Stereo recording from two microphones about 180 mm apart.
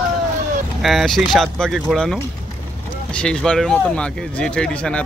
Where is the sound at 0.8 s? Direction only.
Centre (ahead or behind).